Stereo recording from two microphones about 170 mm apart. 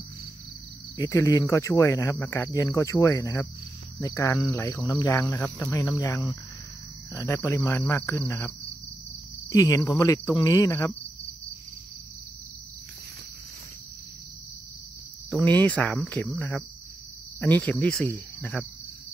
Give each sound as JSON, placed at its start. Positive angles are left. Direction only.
{"t": 0.9, "sound": "speech", "side_deg": 15}
{"t": 9.5, "sound": "cricket", "side_deg": 20}
{"t": 15.2, "sound": "speech", "side_deg": 10}